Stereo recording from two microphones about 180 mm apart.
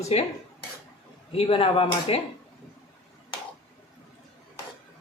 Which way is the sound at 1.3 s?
30° left (ahead or behind).